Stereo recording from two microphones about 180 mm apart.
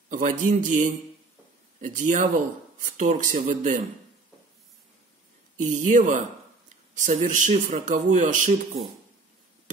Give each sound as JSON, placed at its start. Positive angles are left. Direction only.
{"t": 0.1, "sound": "speech", "side_deg": -45}
{"t": 5.6, "sound": "speech", "side_deg": -45}